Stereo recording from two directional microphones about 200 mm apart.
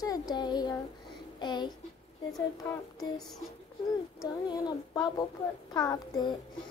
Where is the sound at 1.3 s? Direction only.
20° left (ahead or behind).